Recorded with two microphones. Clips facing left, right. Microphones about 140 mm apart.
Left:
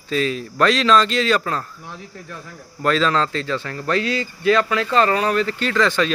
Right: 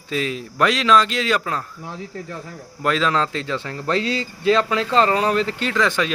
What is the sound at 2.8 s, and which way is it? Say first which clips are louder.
Speech: left 2 dB; 10° right (ahead or behind).